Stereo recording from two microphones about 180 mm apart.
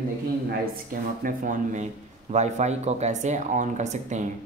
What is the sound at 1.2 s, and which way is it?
Speech, 45° right (ahead or behind).